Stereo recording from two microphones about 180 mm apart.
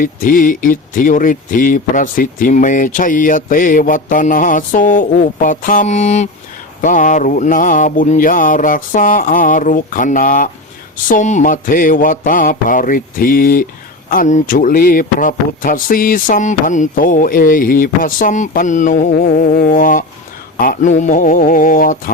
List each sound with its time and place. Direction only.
0.0 s speech: 50° left (ahead or behind)